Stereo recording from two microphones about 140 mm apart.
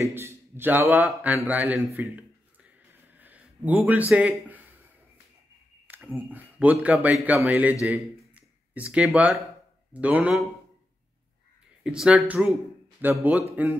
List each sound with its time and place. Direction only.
0.0 s a man's voice: 15° right (ahead or behind)
5.9 s speech: 10° right (ahead or behind)
7.9 s a sound: 10° right (ahead or behind)
8.9 s a man's voice: 10° right (ahead or behind)
11.8 s a man's voice: 5° right (ahead or behind)